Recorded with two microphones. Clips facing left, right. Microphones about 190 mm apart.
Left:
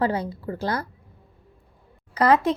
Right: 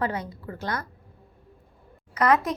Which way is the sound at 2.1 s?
30° left (ahead or behind).